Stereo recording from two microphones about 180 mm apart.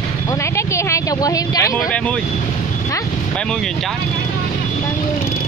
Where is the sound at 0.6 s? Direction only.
15° left (ahead or behind).